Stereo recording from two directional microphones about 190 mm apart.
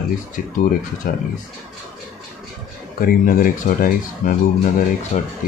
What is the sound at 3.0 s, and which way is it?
Speech, 45° left (ahead or behind).